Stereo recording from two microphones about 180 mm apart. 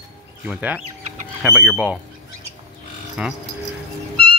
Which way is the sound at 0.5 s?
5° right (ahead or behind).